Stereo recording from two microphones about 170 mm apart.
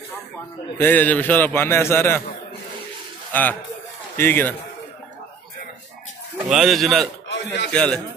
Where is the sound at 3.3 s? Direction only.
10° left (ahead or behind).